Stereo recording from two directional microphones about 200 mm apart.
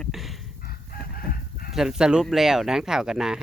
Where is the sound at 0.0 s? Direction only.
Centre (ahead or behind).